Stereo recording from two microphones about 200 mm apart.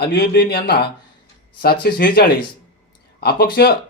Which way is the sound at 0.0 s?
55° left (ahead or behind).